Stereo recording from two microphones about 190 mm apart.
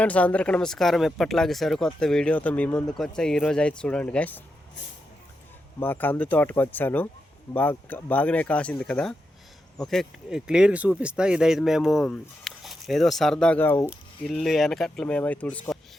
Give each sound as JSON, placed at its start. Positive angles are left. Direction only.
{"t": 0.0, "sound": "speech", "side_deg": 5}
{"t": 5.8, "sound": "speech", "side_deg": 10}
{"t": 14.3, "sound": "speech", "side_deg": 0}